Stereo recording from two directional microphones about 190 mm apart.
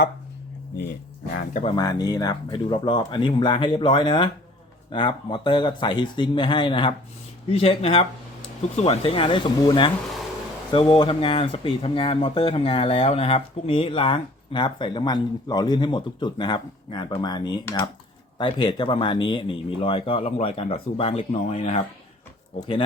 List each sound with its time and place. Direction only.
1.6 s speech: 20° left (ahead or behind)